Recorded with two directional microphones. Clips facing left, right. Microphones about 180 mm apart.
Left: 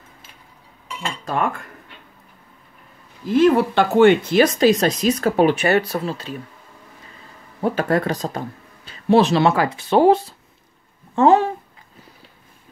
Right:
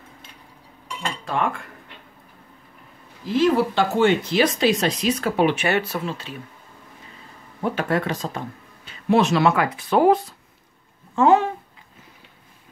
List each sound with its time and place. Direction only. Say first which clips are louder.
1.2 s cutlery: left 2 dB; 40° left (ahead or behind)
3.3 s speech: left 4 dB; 55° left (ahead or behind); by 6.3 s 40° left (ahead or behind)
7.6 s speech: left 3 dB; 40° left (ahead or behind)